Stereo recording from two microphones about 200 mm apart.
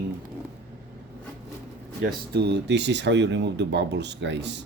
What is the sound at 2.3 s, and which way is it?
Speech, 55° right (ahead or behind).